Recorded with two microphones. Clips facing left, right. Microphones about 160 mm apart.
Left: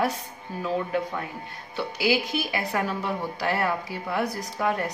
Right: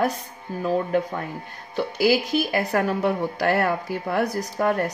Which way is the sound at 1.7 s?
45° right (ahead or behind).